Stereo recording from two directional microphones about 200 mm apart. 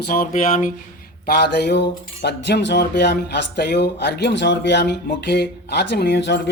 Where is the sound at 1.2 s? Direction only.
60° left (ahead or behind).